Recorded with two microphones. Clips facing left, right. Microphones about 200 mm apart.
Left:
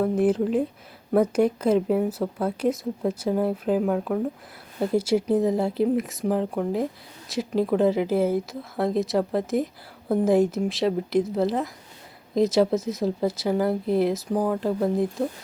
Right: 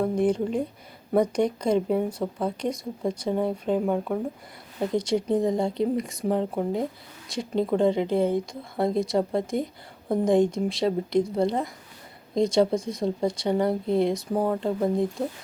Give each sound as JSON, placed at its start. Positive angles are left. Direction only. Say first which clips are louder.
{"t": 0.0, "sound": "a woman's voice", "louder": "left 2 dB", "side_deg": 5}